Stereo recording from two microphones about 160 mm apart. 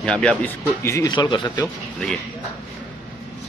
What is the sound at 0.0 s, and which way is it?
Speech, 5° left (ahead or behind).